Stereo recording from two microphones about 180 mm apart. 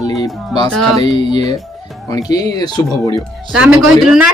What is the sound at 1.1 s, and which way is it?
Speech, 20° left (ahead or behind).